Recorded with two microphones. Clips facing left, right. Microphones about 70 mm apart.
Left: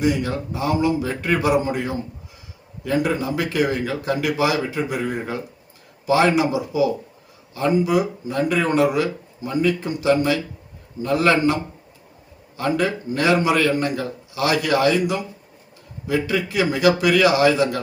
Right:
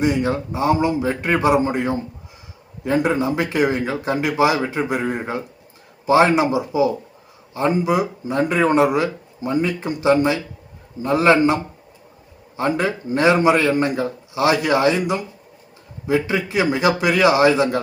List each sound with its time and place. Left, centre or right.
0.0 s speech: right
12.5 s speech: right